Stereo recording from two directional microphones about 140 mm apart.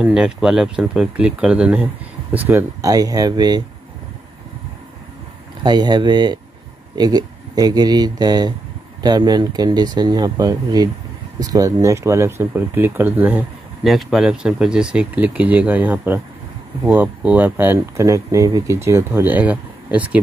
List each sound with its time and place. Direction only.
0.0 s speech: 5° right (ahead or behind); by 3.6 s 30° right (ahead or behind)
5.6 s speech: 30° right (ahead or behind); by 13.5 s 10° right (ahead or behind)
13.8 s speech: centre (ahead or behind)